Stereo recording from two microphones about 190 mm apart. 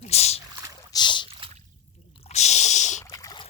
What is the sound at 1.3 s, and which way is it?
Drip, 30° right (ahead or behind).